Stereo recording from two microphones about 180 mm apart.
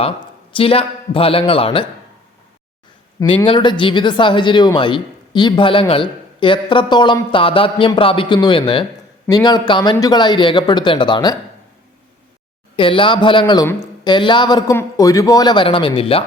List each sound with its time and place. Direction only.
0.5 s speech: 30° left (ahead or behind)
3.4 s speech: 25° left (ahead or behind)
12.7 s speech: 30° left (ahead or behind)